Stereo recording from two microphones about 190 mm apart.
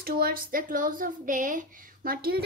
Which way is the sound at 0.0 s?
50° right (ahead or behind).